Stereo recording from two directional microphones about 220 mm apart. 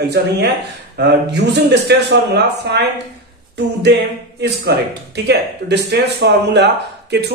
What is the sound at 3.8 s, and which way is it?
Speech, 50° right (ahead or behind).